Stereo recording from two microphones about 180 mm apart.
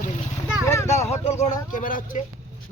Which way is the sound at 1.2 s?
35° left (ahead or behind).